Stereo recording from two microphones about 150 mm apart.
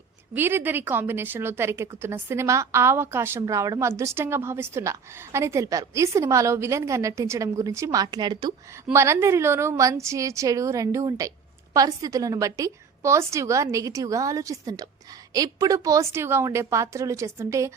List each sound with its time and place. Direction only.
0.3 s a woman's voice: 15° right (ahead or behind); by 8.5 s 30° right (ahead or behind)
8.9 s a woman's voice: 20° right (ahead or behind)